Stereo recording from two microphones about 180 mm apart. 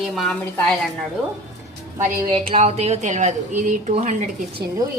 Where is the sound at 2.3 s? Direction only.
35° right (ahead or behind).